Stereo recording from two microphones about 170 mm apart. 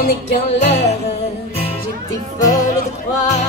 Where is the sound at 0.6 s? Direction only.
40° left (ahead or behind).